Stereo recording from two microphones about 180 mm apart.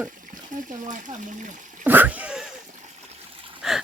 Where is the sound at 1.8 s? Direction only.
10° right (ahead or behind).